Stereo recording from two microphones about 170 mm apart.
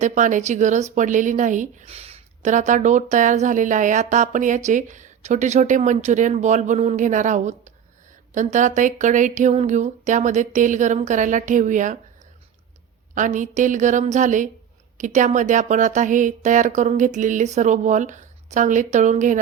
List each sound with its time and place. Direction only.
0.0 s speech: 45° right (ahead or behind)
13.1 s speech: 50° right (ahead or behind)